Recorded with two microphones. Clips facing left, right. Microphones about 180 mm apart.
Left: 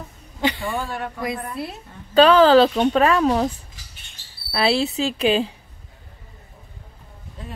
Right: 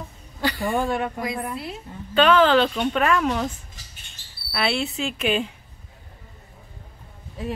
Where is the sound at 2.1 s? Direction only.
35° left (ahead or behind).